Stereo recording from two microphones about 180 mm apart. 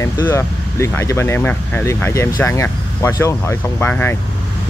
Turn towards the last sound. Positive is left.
turn(degrees=10)  # may be behind; listen again after turning